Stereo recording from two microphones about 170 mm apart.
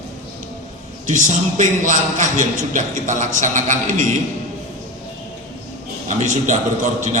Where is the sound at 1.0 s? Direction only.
50° right (ahead or behind).